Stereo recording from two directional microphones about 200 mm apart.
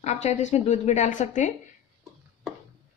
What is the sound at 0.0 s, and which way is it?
A woman's voice, 35° left (ahead or behind).